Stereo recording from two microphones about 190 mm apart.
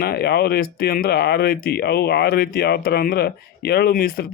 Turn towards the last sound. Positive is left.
turn(degrees=50)  # may be behind; listen again after turning